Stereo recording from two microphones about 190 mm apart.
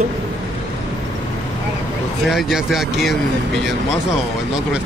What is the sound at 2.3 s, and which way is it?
Speech, centre (ahead or behind).